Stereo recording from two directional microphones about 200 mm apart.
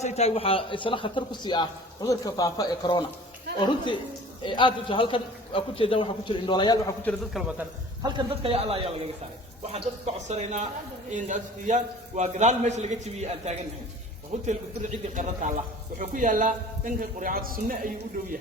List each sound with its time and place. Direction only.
0.0 s a man's voice: 30° left (ahead or behind)
7.0 s a man's voice: 5° left (ahead or behind)
8.0 s a man's voice: 25° right (ahead or behind); by 18.3 s 45° right (ahead or behind)